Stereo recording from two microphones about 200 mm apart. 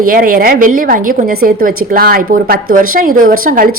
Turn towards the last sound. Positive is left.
turn(degrees=-45)  # may be behind; listen again after turning